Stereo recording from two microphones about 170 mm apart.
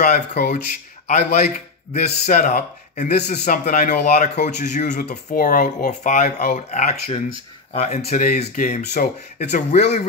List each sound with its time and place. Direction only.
0.0 s speech: 45° left (ahead or behind)